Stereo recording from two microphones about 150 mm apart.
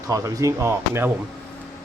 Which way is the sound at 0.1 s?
20° right (ahead or behind).